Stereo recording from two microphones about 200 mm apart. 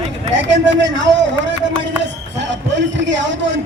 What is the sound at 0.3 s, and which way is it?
A man's voice, 65° right (ahead or behind).